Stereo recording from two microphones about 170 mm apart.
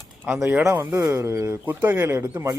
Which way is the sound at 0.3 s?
10° right (ahead or behind).